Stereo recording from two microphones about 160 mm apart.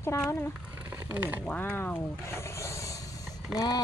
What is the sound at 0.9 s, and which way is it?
Speech, 10° right (ahead or behind).